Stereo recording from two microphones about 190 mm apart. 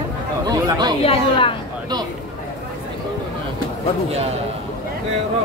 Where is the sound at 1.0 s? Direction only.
30° left (ahead or behind).